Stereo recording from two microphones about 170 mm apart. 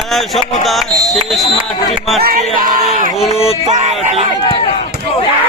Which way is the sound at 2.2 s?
60° right (ahead or behind).